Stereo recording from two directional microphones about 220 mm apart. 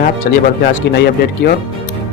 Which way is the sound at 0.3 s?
45° left (ahead or behind).